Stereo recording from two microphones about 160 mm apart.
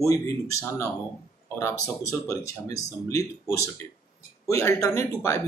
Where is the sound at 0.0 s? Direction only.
20° left (ahead or behind).